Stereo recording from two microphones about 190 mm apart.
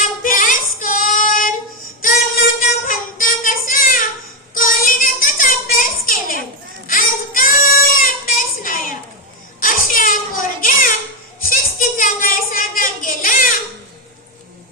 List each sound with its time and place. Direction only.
0.2 s child singing: 45° left (ahead or behind)
2.6 s child singing: 45° left (ahead or behind)
7.9 s a sound: 45° left (ahead or behind)